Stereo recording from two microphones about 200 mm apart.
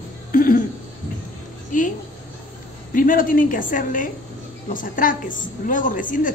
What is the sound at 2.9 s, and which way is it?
A woman's voice, 45° left (ahead or behind).